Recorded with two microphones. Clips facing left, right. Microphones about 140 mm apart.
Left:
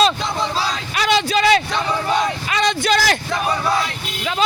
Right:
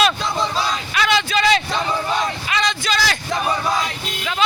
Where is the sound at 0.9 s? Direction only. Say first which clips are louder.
Left 2 dB; 40° left (ahead or behind).